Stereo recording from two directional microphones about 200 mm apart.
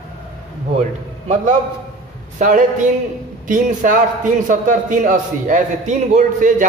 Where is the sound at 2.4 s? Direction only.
40° right (ahead or behind).